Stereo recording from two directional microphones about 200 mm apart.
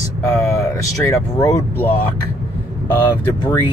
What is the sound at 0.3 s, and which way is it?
Speech, 15° left (ahead or behind).